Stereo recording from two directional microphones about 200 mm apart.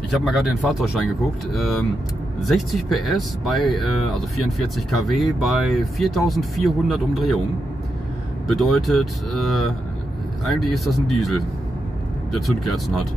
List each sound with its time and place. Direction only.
0.1 s speech: centre (ahead or behind)
8.5 s speech: centre (ahead or behind)